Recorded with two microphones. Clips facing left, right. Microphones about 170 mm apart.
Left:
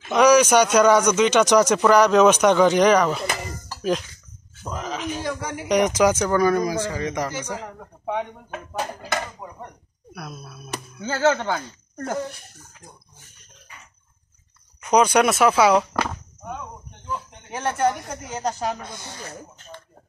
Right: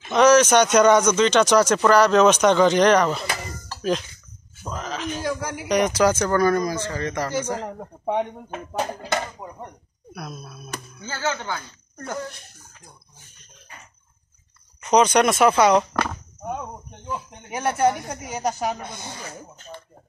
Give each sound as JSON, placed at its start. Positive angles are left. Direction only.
{"t": 0.1, "sound": "a man's voice", "side_deg": 10}
{"t": 5.2, "sound": "speech", "side_deg": 0}
{"t": 5.7, "sound": "a man's voice", "side_deg": 15}
{"t": 10.1, "sound": "speech", "side_deg": 5}
{"t": 11.0, "sound": "speech", "side_deg": 55}
{"t": 14.8, "sound": "speech", "side_deg": 10}
{"t": 17.5, "sound": "speech", "side_deg": -10}